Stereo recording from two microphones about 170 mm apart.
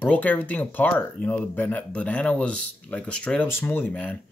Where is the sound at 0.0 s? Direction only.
10° left (ahead or behind).